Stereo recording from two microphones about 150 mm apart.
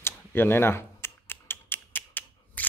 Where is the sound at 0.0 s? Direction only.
15° left (ahead or behind).